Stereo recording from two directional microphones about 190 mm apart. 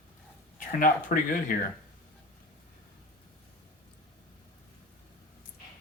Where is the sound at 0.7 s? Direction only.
45° left (ahead or behind).